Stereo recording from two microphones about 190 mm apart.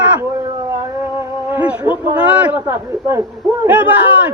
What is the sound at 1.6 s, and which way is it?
A man's voice, 10° right (ahead or behind).